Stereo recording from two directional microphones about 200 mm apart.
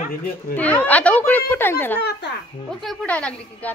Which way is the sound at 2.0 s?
55° left (ahead or behind).